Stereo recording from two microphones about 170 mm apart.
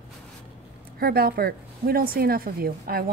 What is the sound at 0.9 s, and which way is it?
A woman's voice, 65° right (ahead or behind).